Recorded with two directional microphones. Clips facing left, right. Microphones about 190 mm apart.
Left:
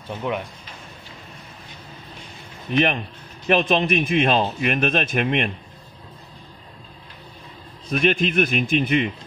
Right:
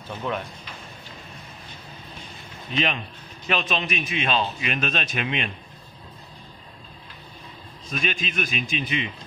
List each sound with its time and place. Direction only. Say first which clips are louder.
0.3 s speech: left 3 dB; 15° left (ahead or behind)
2.7 s a man's voice: left 6 dB; 55° left (ahead or behind)
7.9 s speech: left 9 dB; 60° left (ahead or behind)